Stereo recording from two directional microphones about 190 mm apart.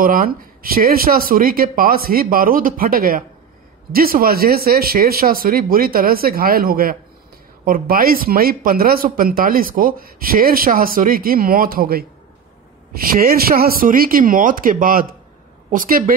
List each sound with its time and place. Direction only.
0.0 s speech: 45° right (ahead or behind)